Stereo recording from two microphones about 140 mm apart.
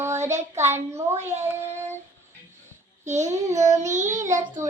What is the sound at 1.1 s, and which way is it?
Speech, 20° right (ahead or behind).